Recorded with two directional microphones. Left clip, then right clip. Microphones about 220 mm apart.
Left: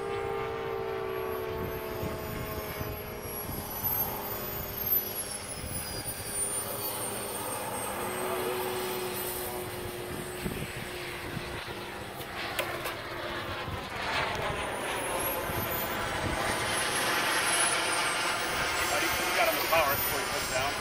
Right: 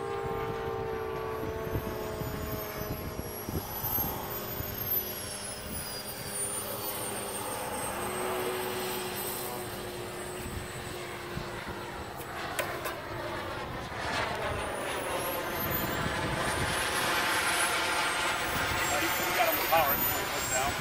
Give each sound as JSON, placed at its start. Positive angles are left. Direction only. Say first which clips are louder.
{"t": 8.5, "sound": "vacuum cleaner", "louder": "left 1 dB", "side_deg": -10}
{"t": 14.0, "sound": "vehicle", "louder": "left 1 dB", "side_deg": -25}